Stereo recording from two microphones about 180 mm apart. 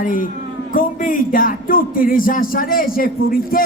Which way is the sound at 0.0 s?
50° left (ahead or behind).